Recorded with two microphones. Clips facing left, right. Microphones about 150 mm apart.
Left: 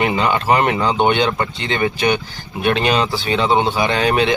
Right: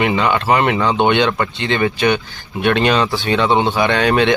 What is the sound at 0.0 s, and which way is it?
Speech, 25° left (ahead or behind).